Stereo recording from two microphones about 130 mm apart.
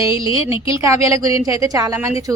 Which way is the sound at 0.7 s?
25° right (ahead or behind).